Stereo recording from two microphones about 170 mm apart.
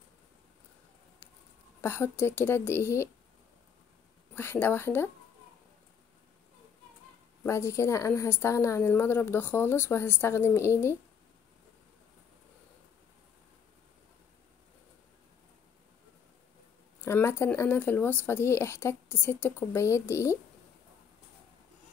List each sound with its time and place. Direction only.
1.8 s a woman's voice: 15° left (ahead or behind)
4.4 s a woman's voice: 10° left (ahead or behind)
7.4 s a woman's voice: 15° left (ahead or behind)
17.0 s a woman's voice: 15° left (ahead or behind)